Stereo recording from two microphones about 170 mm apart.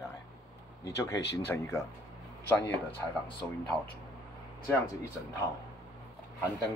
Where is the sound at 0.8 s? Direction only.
15° left (ahead or behind).